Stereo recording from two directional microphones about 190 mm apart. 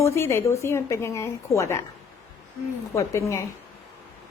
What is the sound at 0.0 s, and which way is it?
A woman's voice, 15° left (ahead or behind).